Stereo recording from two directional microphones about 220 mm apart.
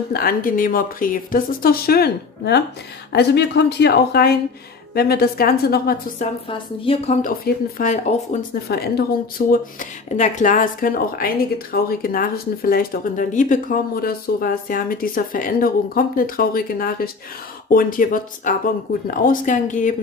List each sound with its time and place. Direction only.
0.1 s a woman's voice: 40° left (ahead or behind)
6.5 s speech: 25° left (ahead or behind)